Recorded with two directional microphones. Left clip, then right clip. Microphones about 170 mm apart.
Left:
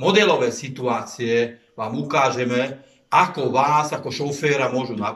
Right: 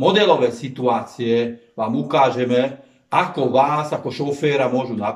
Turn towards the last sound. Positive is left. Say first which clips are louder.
# right 2 dB
turn(degrees=-25)  # may be behind; listen again after turning